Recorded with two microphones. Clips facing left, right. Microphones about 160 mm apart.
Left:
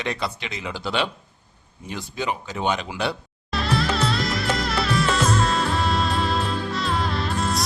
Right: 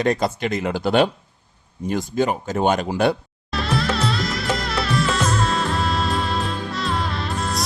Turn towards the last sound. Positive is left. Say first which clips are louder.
# left 1 dB
turn(degrees=0)  # may be behind; listen again after turning